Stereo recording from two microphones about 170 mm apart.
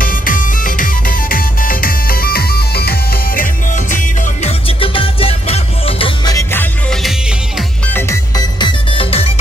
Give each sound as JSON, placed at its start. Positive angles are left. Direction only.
{"t": 0.0, "sound": "music", "side_deg": 55}
{"t": 6.3, "sound": "music", "side_deg": 10}
{"t": 7.0, "sound": "music", "side_deg": 0}
{"t": 7.9, "sound": "music", "side_deg": 20}